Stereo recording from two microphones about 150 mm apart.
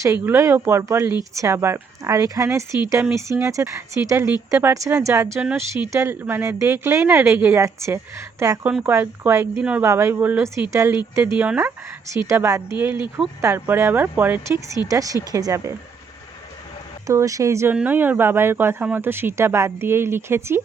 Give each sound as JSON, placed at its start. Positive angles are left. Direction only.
{"t": 0.0, "sound": "speech", "side_deg": -20}
{"t": 9.8, "sound": "speech", "side_deg": -20}
{"t": 12.3, "sound": "speech", "side_deg": -20}
{"t": 17.1, "sound": "speech", "side_deg": -20}